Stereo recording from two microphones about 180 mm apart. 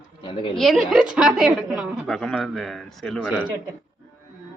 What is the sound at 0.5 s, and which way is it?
A woman's voice, centre (ahead or behind).